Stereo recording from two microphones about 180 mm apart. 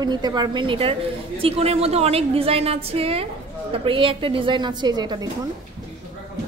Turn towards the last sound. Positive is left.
turn(degrees=-25)  # may be behind; listen again after turning